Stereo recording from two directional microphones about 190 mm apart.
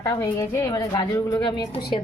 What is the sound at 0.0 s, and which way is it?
A woman's voice, 15° left (ahead or behind).